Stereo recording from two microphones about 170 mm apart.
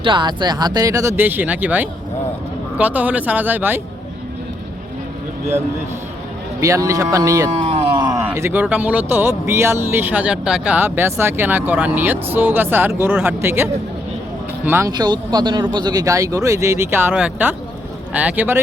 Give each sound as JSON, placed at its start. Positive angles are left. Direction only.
{"t": 0.0, "sound": "speech", "side_deg": -25}
{"t": 6.6, "sound": "speech", "side_deg": -20}
{"t": 7.5, "sound": "a sound", "side_deg": -35}
{"t": 8.1, "sound": "speech", "side_deg": -15}